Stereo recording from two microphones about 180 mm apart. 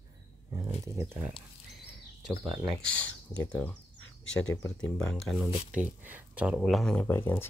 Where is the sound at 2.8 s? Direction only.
5° left (ahead or behind).